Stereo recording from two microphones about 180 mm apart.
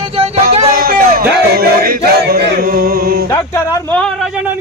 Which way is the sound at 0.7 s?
55° right (ahead or behind).